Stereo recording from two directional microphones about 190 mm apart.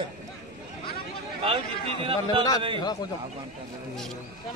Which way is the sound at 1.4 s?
30° right (ahead or behind).